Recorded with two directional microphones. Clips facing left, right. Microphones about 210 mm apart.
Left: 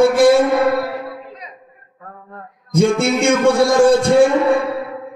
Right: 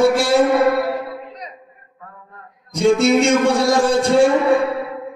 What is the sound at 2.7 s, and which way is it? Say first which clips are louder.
Speech: right 1 dB; 55° left (ahead or behind).